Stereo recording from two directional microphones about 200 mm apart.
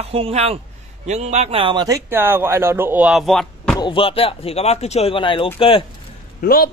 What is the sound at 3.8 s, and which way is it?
Speech, 25° left (ahead or behind).